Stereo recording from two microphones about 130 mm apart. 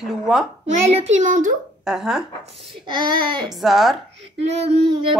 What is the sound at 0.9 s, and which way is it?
Speech, 60° right (ahead or behind).